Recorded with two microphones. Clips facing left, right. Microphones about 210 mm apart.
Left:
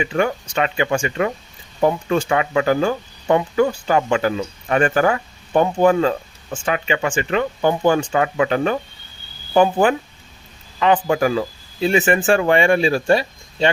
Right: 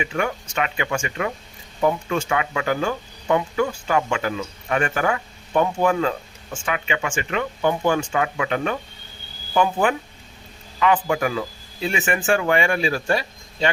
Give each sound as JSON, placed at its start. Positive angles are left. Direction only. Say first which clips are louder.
{"t": 0.0, "sound": "speech", "louder": "left 5 dB", "side_deg": 35}